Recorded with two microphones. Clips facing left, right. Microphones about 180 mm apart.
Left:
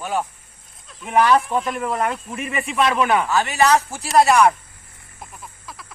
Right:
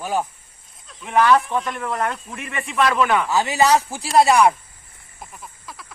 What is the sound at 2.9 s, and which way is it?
Speech, 20° left (ahead or behind).